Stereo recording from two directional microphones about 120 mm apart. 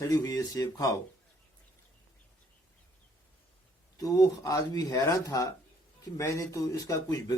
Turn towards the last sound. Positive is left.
turn(degrees=30)  # may be behind; listen again after turning